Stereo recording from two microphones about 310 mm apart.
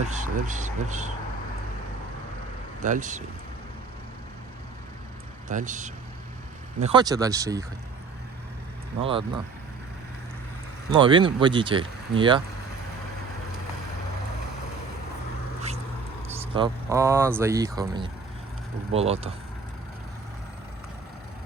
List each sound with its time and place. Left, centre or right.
0.0 s speech: right
2.8 s speech: right
5.5 s speech: right
9.0 s speech: centre
10.9 s speech: centre
16.6 s speech: centre